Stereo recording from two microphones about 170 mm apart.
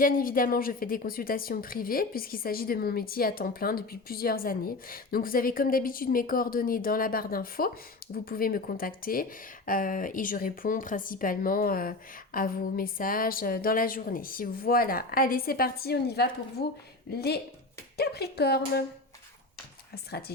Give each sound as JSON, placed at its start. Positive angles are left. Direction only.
{"t": 0.0, "sound": "a woman's voice", "side_deg": 55}
{"t": 19.9, "sound": "speech", "side_deg": 70}